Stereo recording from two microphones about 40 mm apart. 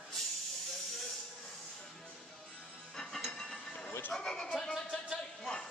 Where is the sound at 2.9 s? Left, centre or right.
Centre.